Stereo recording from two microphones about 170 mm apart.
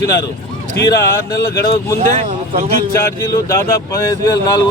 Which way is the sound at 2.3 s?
50° right (ahead or behind).